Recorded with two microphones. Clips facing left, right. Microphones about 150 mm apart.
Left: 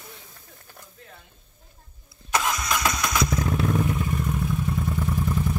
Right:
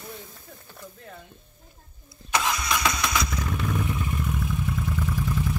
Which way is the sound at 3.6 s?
40° left (ahead or behind).